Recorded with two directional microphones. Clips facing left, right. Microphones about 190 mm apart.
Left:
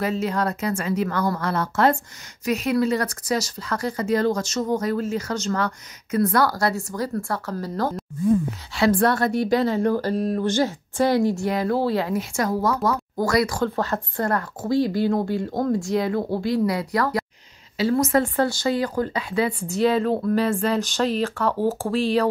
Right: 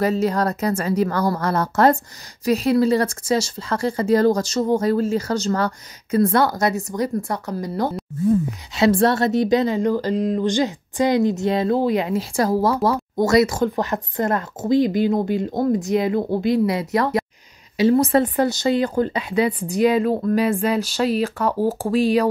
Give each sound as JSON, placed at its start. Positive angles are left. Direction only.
{"t": 0.0, "sound": "speech", "side_deg": -40}
{"t": 12.2, "sound": "a woman's voice", "side_deg": -30}